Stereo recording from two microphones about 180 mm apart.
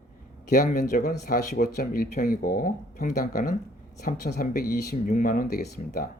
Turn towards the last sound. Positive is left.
turn(degrees=55)  # may be behind; listen again after turning